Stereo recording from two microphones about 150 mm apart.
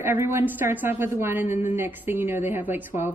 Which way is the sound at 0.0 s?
15° right (ahead or behind).